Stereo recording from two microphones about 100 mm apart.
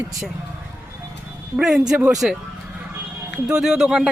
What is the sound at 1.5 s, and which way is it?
Speech, 5° right (ahead or behind).